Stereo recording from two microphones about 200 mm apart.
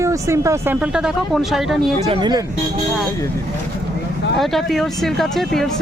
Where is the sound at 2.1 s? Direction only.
25° right (ahead or behind).